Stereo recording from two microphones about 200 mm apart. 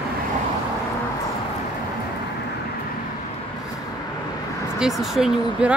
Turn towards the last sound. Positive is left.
turn(degrees=-5)  # may be behind; listen again after turning